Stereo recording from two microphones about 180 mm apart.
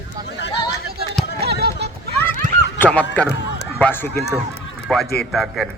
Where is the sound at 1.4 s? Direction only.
65° right (ahead or behind).